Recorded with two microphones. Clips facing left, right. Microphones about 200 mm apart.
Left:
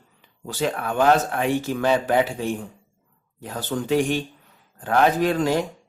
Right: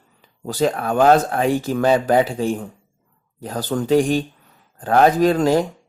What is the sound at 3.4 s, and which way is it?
Speech, 40° right (ahead or behind).